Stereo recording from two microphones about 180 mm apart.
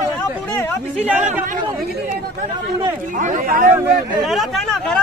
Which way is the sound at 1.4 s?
50° right (ahead or behind).